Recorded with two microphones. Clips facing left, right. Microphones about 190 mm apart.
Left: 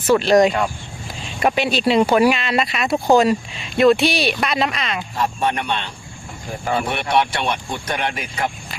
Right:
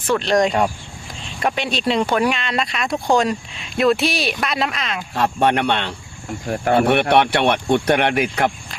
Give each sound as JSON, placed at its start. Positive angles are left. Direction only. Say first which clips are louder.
{"t": 0.1, "sound": "speech", "louder": "left 3 dB", "side_deg": 5}
{"t": 5.1, "sound": "speech", "louder": "right 5 dB", "side_deg": -70}